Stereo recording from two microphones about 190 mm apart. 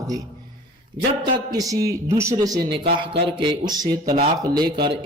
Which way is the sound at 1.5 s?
20° right (ahead or behind).